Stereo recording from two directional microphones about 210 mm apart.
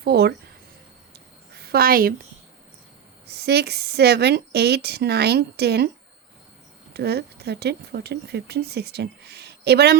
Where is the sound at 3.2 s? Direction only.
50° right (ahead or behind).